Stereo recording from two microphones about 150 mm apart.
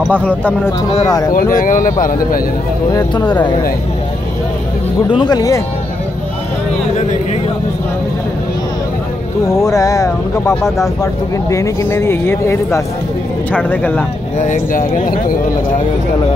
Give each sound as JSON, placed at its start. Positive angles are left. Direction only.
{"t": 0.1, "sound": "speech", "side_deg": 10}
{"t": 1.0, "sound": "speech", "side_deg": 25}
{"t": 1.3, "sound": "speech", "side_deg": 65}
{"t": 2.9, "sound": "speech", "side_deg": 30}
{"t": 5.2, "sound": "speech", "side_deg": 25}
{"t": 9.6, "sound": "speech", "side_deg": 20}
{"t": 14.4, "sound": "speech", "side_deg": 60}